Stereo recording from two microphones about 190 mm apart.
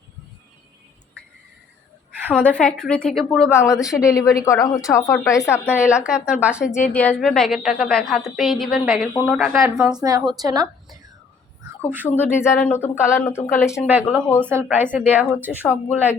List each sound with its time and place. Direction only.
2.4 s a woman's voice: 5° left (ahead or behind)
3.5 s a woman's voice: 15° left (ahead or behind)
5.7 s a woman's voice: 5° right (ahead or behind)
6.9 s a woman's voice: 10° left (ahead or behind)
10.0 s speech: 20° right (ahead or behind)
11.9 s speech: 10° right (ahead or behind)
12.1 s a woman's voice: 10° left (ahead or behind)
13.7 s speech: 10° right (ahead or behind)